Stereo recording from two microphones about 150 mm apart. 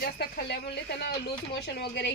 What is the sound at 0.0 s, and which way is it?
Speech, 90° left.